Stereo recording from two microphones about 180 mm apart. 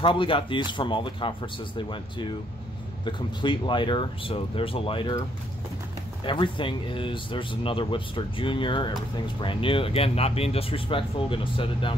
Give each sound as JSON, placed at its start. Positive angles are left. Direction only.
{"t": 0.0, "sound": "speech", "side_deg": 30}
{"t": 6.2, "sound": "speech", "side_deg": 25}